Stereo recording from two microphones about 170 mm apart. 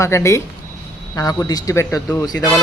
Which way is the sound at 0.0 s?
15° left (ahead or behind).